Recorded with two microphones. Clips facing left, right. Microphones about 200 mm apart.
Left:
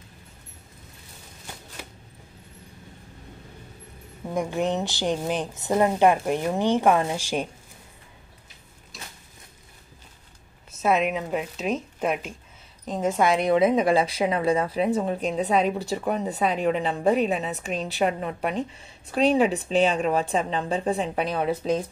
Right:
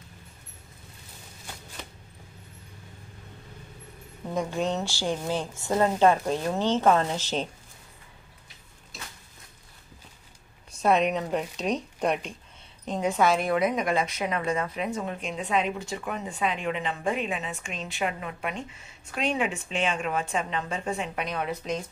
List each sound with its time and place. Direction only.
1.8 s a sound: 5° left (ahead or behind)
4.3 s a woman's voice: 15° left (ahead or behind)
10.7 s speech: 5° left (ahead or behind)
13.4 s a woman's voice: 25° left (ahead or behind)